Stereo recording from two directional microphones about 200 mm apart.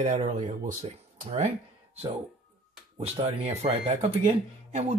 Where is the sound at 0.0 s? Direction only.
35° right (ahead or behind).